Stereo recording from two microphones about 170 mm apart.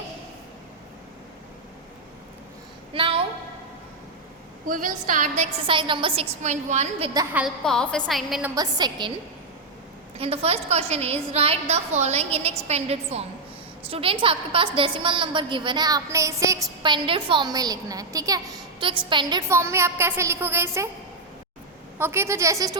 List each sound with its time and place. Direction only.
2.9 s a sound: 30° right (ahead or behind)
4.7 s a woman's voice: 50° right (ahead or behind)
5.6 s a woman's voice: 30° right (ahead or behind)
6.4 s a woman's voice: 45° right (ahead or behind)
7.3 s a woman's voice: centre (ahead or behind)
8.5 s a woman's voice: 25° right (ahead or behind)
10.2 s a woman's voice: 35° right (ahead or behind); by 20.9 s 15° right (ahead or behind)
21.9 s a woman's voice: 15° right (ahead or behind)